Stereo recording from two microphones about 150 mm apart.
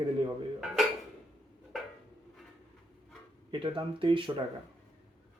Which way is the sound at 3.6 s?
35° right (ahead or behind).